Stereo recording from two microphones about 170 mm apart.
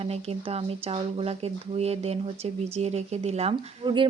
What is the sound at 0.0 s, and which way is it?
Speech, 35° right (ahead or behind).